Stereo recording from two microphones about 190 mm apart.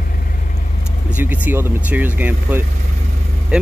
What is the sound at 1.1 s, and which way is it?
Speech, 10° right (ahead or behind).